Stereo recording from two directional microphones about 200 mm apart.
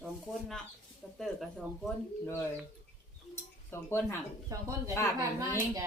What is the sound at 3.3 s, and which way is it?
Speech, 10° left (ahead or behind).